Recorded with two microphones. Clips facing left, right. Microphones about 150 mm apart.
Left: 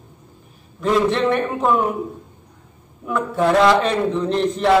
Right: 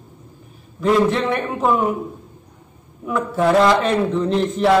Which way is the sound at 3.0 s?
Centre (ahead or behind).